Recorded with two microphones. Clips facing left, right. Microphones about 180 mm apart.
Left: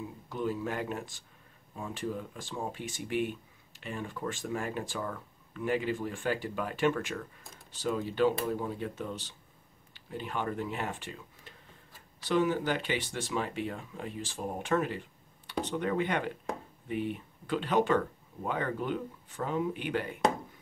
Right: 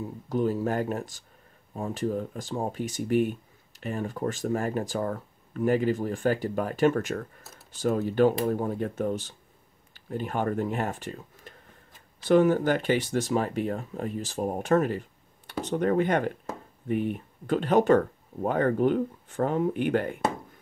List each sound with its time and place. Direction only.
0.3 s speech: 45° right (ahead or behind)